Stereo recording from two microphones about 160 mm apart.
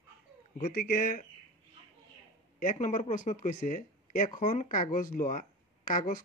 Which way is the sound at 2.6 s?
50° left (ahead or behind).